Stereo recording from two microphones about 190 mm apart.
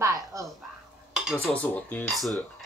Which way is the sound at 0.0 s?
15° right (ahead or behind).